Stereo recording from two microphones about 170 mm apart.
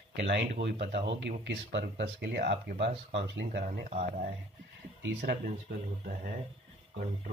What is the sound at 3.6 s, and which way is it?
Speech, 50° right (ahead or behind).